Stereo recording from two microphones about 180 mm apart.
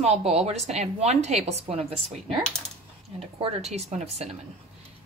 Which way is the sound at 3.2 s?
35° right (ahead or behind).